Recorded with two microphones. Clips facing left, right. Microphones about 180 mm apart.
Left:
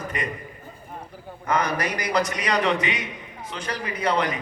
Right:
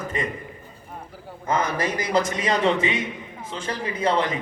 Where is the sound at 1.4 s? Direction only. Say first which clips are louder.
Even; 25° right (ahead or behind).